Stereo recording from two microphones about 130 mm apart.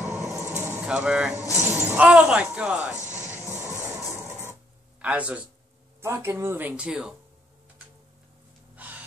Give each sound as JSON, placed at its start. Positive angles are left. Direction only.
{"t": 0.0, "sound": "a sound", "side_deg": -20}
{"t": 0.7, "sound": "speech", "side_deg": -10}
{"t": 1.4, "sound": "speech", "side_deg": 20}
{"t": 1.7, "sound": "speech", "side_deg": -15}
{"t": 3.6, "sound": "train", "side_deg": -20}
{"t": 5.0, "sound": "speech", "side_deg": -10}
{"t": 6.7, "sound": "speech", "side_deg": -5}
{"t": 8.7, "sound": "gasp", "side_deg": -15}